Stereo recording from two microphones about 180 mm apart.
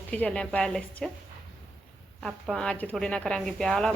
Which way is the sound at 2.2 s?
5° left (ahead or behind).